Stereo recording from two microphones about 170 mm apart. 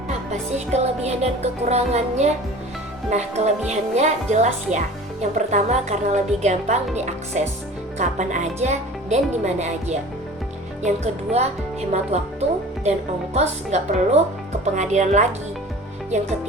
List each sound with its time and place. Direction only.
0.1 s music: 40° right (ahead or behind)
3.7 s speech: 45° right (ahead or behind)
10.8 s music: 40° right (ahead or behind)
13.3 s music: 40° right (ahead or behind)
14.6 s speech: 45° right (ahead or behind)